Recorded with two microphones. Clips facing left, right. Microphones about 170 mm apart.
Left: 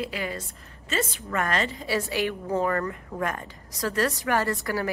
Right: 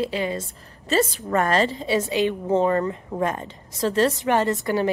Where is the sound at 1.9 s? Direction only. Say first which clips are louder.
Right 3 dB; 20° right (ahead or behind).